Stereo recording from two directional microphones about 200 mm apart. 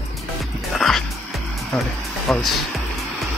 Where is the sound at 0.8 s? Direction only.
Centre (ahead or behind).